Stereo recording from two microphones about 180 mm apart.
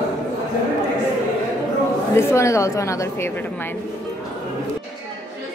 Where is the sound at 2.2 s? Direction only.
15° left (ahead or behind).